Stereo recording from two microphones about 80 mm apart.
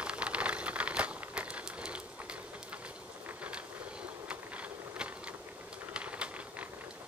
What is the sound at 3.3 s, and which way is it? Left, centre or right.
Vehicle, centre.